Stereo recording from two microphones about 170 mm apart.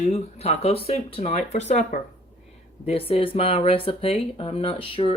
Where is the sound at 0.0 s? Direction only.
40° left (ahead or behind).